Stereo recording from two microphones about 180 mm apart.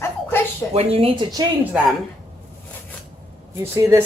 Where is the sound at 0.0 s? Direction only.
15° left (ahead or behind).